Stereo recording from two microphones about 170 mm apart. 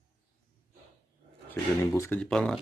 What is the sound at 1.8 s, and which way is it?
Speech, 15° left (ahead or behind).